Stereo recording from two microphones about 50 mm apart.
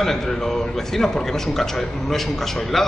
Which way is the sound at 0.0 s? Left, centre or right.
Centre.